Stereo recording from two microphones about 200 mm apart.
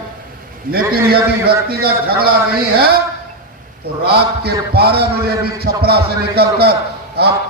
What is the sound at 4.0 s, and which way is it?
A man's voice, 55° right (ahead or behind).